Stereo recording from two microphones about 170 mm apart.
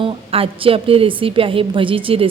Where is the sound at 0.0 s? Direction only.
35° right (ahead or behind).